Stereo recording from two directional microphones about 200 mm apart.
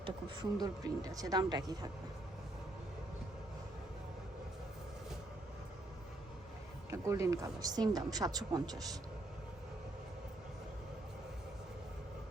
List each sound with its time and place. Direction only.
0.6 s speech: 20° right (ahead or behind)
6.9 s speech: 15° right (ahead or behind)